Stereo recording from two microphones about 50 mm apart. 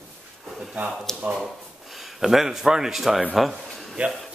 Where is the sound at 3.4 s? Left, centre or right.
Centre.